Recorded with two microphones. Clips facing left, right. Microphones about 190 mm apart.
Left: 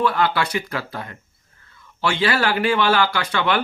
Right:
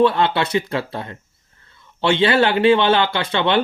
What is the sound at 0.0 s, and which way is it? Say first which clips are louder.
Speech: right 4 dB; 25° right (ahead or behind).